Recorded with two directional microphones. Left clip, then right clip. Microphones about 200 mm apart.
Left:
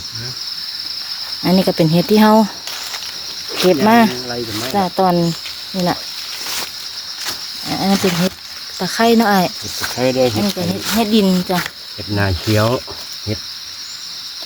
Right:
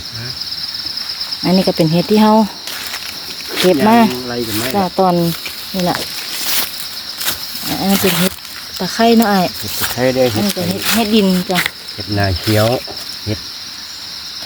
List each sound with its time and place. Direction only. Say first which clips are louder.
1.5 s speech: right 1 dB; centre (ahead or behind)
3.6 s speech: right 1 dB; centre (ahead or behind)
6.4 s a sound: right 5 dB; 55° right (ahead or behind)
7.7 s speech: even; centre (ahead or behind)
7.9 s speech: right 4 dB; 45° right (ahead or behind)
8.8 s speech: right 1 dB; centre (ahead or behind)
9.8 s speech: right 2 dB; 15° right (ahead or behind); by 12.8 s centre (ahead or behind)